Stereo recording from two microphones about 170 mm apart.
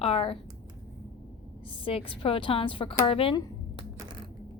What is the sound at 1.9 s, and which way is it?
A woman's voice, 35° left (ahead or behind).